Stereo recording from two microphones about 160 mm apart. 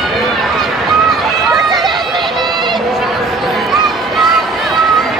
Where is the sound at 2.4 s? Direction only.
25° right (ahead or behind).